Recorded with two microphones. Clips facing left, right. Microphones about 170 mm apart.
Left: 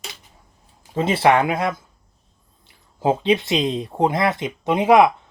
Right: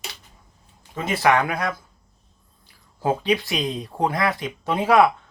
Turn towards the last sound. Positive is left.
turn(degrees=20)  # may be behind; listen again after turning